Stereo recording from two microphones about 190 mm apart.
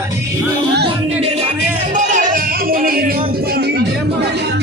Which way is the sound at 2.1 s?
50° right (ahead or behind).